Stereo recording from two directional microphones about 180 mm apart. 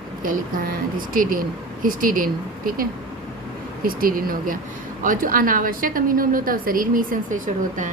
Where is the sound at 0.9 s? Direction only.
50° right (ahead or behind).